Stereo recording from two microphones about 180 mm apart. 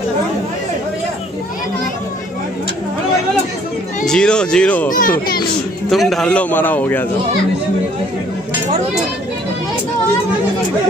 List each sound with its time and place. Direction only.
4.0 s speech: 5° left (ahead or behind)
4.8 s speech: 50° left (ahead or behind)
5.9 s a man's voice: centre (ahead or behind)